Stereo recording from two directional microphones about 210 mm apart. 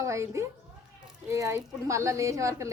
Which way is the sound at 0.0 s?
15° right (ahead or behind).